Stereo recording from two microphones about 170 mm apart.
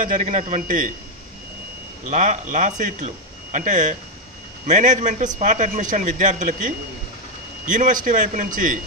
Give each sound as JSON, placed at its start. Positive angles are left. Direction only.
{"t": 0.0, "sound": "a man's voice", "side_deg": -50}
{"t": 2.0, "sound": "a man's voice", "side_deg": -45}